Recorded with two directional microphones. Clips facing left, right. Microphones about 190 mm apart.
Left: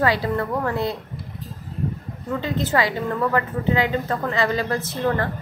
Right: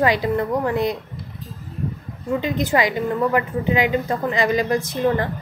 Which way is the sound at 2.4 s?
15° right (ahead or behind).